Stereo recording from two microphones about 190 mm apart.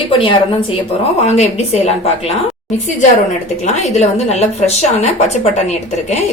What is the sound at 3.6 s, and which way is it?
A woman's voice, 35° left (ahead or behind).